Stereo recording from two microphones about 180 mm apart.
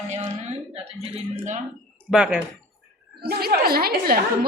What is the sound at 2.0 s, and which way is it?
Speech, 5° right (ahead or behind).